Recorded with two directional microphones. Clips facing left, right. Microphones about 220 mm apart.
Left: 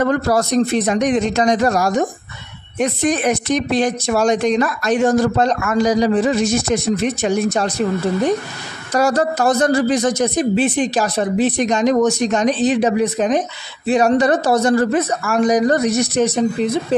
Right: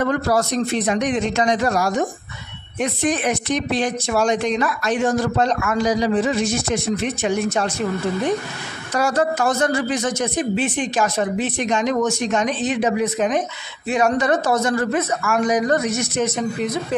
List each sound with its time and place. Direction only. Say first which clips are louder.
0.0 s speech: left 3 dB; 40° left (ahead or behind)
8.9 s speech: left 3 dB; 40° left (ahead or behind)